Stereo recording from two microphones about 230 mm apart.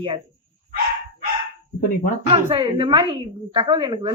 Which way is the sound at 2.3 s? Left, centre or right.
Right.